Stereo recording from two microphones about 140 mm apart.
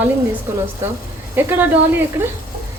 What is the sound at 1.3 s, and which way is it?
Speech, 15° right (ahead or behind).